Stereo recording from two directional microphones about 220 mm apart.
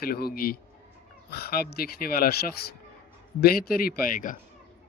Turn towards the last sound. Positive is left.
turn(degrees=40)  # may be behind; listen again after turning